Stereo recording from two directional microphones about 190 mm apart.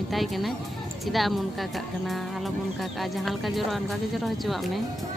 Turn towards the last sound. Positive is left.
turn(degrees=0)  # may be behind; listen again after turning